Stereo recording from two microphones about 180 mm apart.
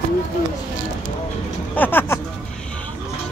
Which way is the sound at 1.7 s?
10° left (ahead or behind).